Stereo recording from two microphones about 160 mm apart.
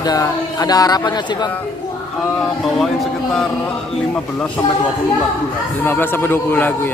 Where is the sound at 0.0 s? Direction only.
25° left (ahead or behind).